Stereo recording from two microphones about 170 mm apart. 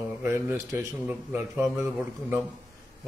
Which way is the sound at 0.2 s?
10° right (ahead or behind).